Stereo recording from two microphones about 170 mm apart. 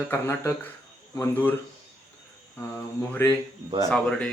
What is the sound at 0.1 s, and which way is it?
Speech, 15° left (ahead or behind).